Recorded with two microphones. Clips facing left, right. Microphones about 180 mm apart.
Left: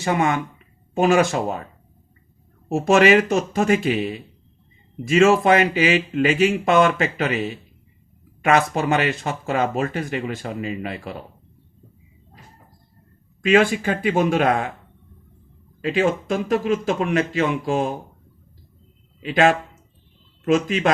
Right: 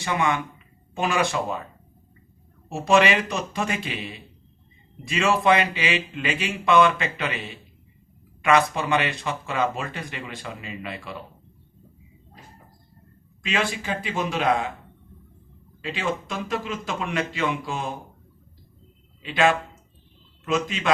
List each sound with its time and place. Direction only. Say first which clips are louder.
0.0 s speech: left 4 dB; 45° left (ahead or behind)
2.6 s speech: left 5 dB; 45° left (ahead or behind)
13.4 s speech: left 10 dB; 50° left (ahead or behind)
15.8 s speech: left 8 dB; 45° left (ahead or behind)
19.2 s speech: left 4 dB; 45° left (ahead or behind)